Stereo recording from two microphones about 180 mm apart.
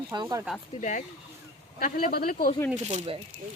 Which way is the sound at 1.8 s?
55° left (ahead or behind).